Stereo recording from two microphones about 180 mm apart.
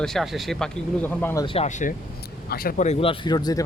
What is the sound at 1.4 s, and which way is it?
Speech, 30° left (ahead or behind).